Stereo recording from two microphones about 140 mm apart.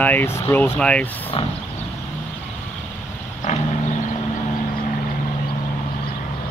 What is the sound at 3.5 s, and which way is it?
Vehicle, 55° left (ahead or behind).